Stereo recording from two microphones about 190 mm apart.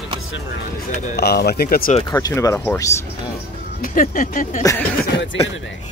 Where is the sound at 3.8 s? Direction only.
45° left (ahead or behind).